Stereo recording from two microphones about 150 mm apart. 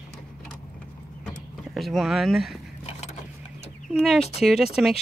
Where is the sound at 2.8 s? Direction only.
45° left (ahead or behind).